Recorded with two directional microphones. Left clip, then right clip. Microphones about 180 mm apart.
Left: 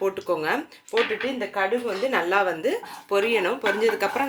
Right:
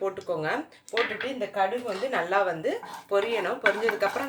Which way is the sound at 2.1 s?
45° left (ahead or behind).